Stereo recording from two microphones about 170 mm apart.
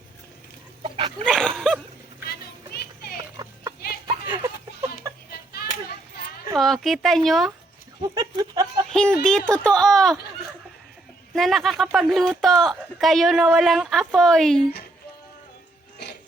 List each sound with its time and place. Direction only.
0.8 s a sound: 30° right (ahead or behind)
1.2 s dog: 5° left (ahead or behind)
2.3 s children playing: 65° left (ahead or behind)
3.3 s clip-clop: 20° right (ahead or behind)
4.0 s a sound: 20° right (ahead or behind)
5.3 s a sound: 65° left (ahead or behind)
6.6 s speech: centre (ahead or behind)
8.0 s speech: 25° right (ahead or behind)
8.9 s speech: 5° left (ahead or behind)
11.3 s speech: centre (ahead or behind)